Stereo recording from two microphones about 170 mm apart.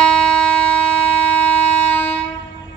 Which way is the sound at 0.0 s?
5° left (ahead or behind).